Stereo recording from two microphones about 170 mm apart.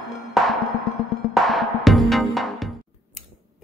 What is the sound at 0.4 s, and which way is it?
Music, centre (ahead or behind).